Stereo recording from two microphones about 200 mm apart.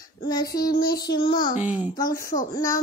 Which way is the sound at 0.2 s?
20° left (ahead or behind).